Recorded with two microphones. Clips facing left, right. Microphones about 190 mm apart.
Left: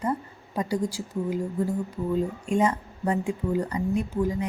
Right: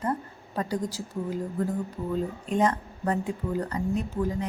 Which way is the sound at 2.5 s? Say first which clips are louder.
Even; 10° left (ahead or behind).